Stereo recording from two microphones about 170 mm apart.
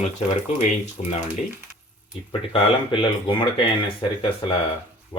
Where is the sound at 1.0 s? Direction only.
45° left (ahead or behind).